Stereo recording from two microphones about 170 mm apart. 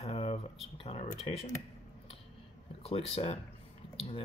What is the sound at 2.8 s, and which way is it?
Speech, 35° left (ahead or behind).